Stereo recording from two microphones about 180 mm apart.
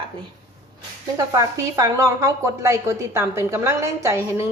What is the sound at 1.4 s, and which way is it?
A woman's voice, 20° right (ahead or behind).